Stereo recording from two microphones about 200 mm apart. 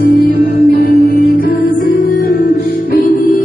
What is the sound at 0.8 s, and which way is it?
Music, 50° left (ahead or behind).